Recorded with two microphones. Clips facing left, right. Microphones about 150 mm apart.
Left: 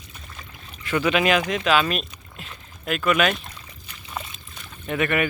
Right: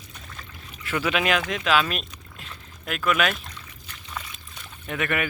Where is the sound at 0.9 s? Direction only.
Centre (ahead or behind).